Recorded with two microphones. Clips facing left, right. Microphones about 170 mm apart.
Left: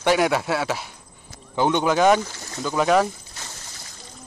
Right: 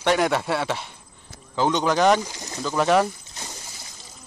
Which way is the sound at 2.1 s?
15° right (ahead or behind).